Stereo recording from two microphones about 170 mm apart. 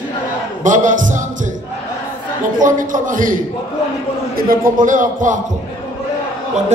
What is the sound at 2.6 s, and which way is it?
Speech, 50° right (ahead or behind).